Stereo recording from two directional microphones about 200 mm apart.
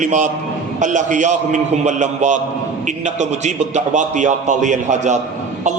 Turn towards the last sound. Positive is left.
turn(degrees=-35)  # may be behind; listen again after turning